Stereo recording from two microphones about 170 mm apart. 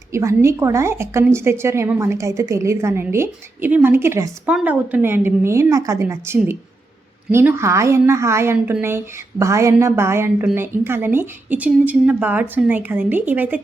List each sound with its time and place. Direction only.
0.1 s a woman's voice: 15° right (ahead or behind)